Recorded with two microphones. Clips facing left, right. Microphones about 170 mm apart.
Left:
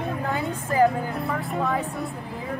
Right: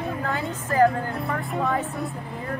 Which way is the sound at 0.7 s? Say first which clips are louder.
Right 1 dB; 10° left (ahead or behind).